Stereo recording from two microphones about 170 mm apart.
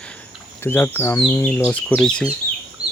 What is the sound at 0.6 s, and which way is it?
Cricket, 15° left (ahead or behind).